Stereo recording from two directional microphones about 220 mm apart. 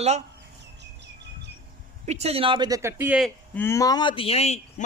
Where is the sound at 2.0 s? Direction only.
30° right (ahead or behind).